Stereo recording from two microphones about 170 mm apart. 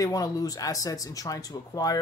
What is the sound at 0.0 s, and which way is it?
Speech, 20° left (ahead or behind).